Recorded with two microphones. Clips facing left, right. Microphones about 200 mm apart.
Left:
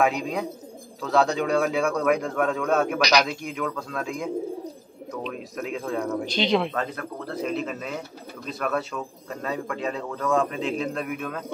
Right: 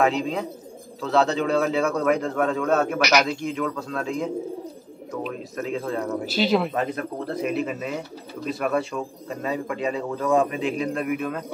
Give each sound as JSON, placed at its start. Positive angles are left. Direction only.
{"t": 0.0, "sound": "speech", "side_deg": 0}
{"t": 2.1, "sound": "speech", "side_deg": 10}
{"t": 2.4, "sound": "speech", "side_deg": 0}
{"t": 6.8, "sound": "speech", "side_deg": -15}
{"t": 7.5, "sound": "speech", "side_deg": -5}
{"t": 10.2, "sound": "speech", "side_deg": -15}
{"t": 10.6, "sound": "speech", "side_deg": -5}